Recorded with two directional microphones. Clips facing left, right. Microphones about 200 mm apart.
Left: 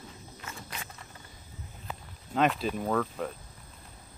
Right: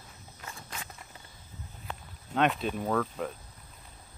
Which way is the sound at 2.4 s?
Centre (ahead or behind).